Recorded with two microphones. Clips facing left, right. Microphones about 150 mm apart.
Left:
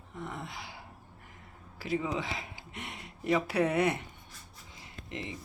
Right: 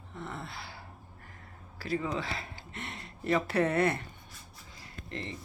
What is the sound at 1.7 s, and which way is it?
Speech, 20° left (ahead or behind).